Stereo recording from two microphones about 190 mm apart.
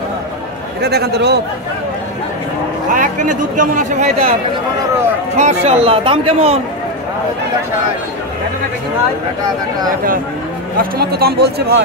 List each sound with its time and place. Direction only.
0.7 s a man's voice: 55° right (ahead or behind)
2.9 s speech: 45° right (ahead or behind)
5.4 s speech: 35° right (ahead or behind)
9.8 s a man's voice: 45° right (ahead or behind)